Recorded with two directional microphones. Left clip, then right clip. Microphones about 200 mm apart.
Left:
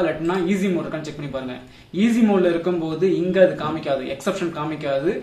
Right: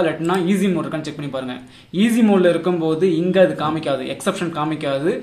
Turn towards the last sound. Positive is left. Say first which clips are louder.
# right 2 dB
turn(degrees=-40)  # may be behind; listen again after turning